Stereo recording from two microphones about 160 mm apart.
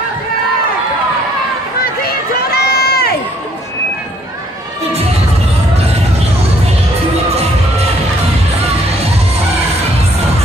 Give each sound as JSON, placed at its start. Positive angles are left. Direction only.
{"t": 2.0, "sound": "crowd", "side_deg": 75}